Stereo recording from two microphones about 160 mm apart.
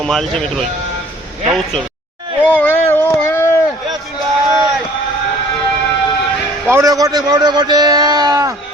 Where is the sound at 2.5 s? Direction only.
10° left (ahead or behind).